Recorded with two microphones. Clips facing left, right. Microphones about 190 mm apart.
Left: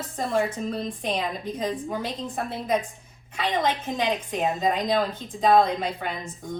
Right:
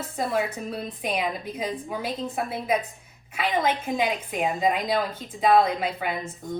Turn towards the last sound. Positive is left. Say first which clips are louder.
# right 2 dB
turn(degrees=-5)  # may be behind; listen again after turning